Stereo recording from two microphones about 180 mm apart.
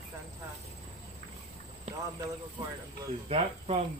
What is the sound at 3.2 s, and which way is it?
Speech, 35° right (ahead or behind).